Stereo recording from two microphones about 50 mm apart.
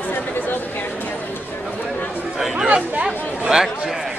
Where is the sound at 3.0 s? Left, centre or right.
Centre.